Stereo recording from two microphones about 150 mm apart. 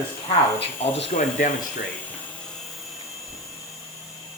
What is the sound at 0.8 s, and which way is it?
Speech, 40° left (ahead or behind).